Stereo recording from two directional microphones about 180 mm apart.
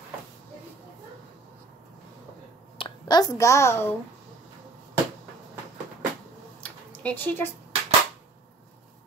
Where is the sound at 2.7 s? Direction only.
25° left (ahead or behind).